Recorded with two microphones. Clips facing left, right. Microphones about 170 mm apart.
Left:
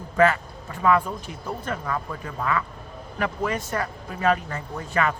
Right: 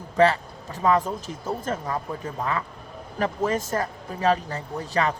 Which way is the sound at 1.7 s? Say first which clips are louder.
Right 1 dB; 25° right (ahead or behind).